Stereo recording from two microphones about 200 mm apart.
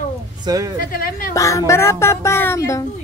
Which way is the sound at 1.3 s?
15° left (ahead or behind).